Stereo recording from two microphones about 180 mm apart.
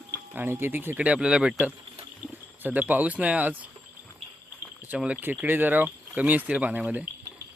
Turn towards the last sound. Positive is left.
turn(degrees=-10)  # may be behind; listen again after turning